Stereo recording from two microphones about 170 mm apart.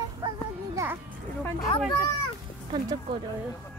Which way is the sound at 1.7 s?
30° left (ahead or behind).